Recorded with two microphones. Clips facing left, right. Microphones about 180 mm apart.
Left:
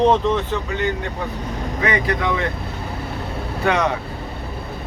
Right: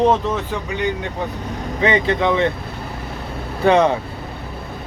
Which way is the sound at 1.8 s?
25° right (ahead or behind).